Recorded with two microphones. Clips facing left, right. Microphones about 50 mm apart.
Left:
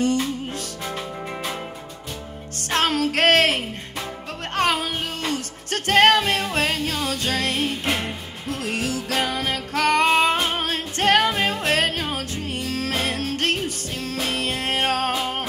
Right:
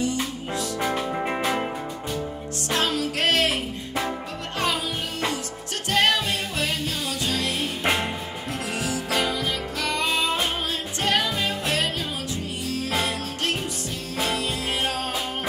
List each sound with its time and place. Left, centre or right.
2.7 s music: left
4.6 s music: left
7.8 s music: right
9.1 s music: left